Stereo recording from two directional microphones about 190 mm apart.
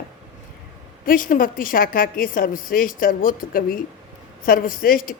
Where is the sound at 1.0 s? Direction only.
45° left (ahead or behind).